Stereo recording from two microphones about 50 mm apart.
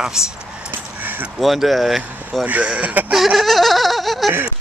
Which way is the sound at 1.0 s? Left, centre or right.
Right.